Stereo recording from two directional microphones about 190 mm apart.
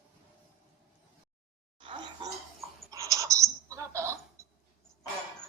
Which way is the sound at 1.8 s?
25° right (ahead or behind).